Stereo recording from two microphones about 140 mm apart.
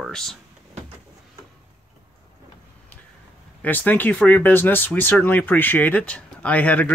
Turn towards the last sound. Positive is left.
turn(degrees=10)  # may be behind; listen again after turning